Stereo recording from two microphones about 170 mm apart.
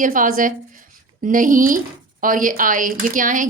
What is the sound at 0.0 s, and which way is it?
A woman's voice, 50° right (ahead or behind).